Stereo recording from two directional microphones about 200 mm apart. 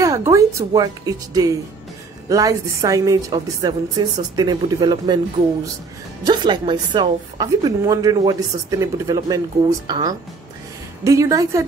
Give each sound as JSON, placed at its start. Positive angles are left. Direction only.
{"t": 0.0, "sound": "a woman's voice", "side_deg": -15}
{"t": 6.2, "sound": "a woman's voice", "side_deg": -20}